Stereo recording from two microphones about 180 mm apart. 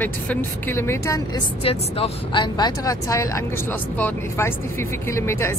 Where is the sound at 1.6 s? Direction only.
30° left (ahead or behind).